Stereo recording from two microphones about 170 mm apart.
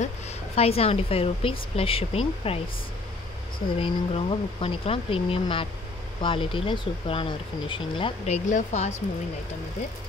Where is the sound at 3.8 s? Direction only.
30° left (ahead or behind).